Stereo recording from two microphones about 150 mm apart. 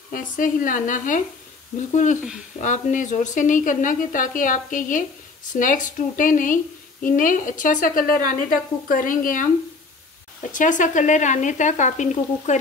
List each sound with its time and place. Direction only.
0.1 s a woman's voice: 60° left (ahead or behind)